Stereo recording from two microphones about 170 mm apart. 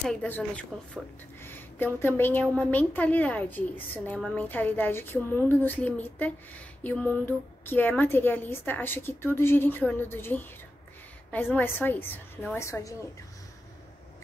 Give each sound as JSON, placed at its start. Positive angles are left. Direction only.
{"t": 0.0, "sound": "a woman's voice", "side_deg": 5}